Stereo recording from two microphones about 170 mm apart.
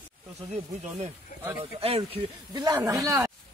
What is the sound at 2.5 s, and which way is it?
Speech, 20° right (ahead or behind).